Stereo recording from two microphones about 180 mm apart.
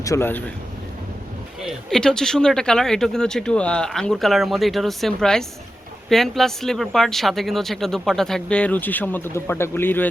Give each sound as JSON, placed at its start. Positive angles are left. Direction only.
{"t": 0.0, "sound": "speech", "side_deg": 15}
{"t": 1.6, "sound": "speech", "side_deg": 5}